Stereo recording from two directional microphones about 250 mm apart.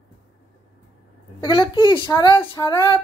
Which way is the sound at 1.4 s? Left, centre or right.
Centre.